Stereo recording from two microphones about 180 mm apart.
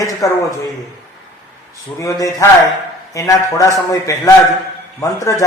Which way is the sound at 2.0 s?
20° left (ahead or behind).